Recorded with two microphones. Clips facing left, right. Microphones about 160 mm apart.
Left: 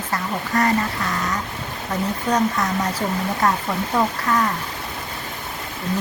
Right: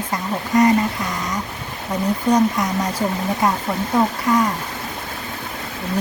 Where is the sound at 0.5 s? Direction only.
20° right (ahead or behind).